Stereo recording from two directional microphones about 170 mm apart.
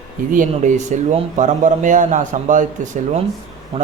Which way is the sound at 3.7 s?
35° right (ahead or behind).